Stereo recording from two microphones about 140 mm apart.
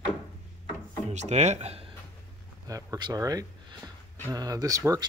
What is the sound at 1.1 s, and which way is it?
Speech, 55° right (ahead or behind).